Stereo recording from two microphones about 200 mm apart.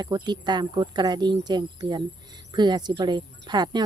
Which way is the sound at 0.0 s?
20° right (ahead or behind).